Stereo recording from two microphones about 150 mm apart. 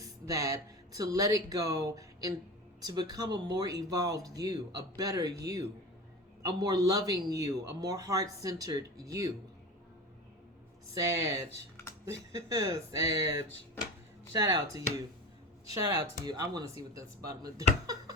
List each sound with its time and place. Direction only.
0.0 s speech: 20° right (ahead or behind)
10.9 s speech: 20° right (ahead or behind)
16.2 s speech: 25° right (ahead or behind)